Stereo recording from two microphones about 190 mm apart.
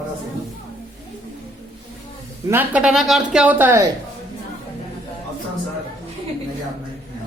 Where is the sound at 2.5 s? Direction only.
10° right (ahead or behind).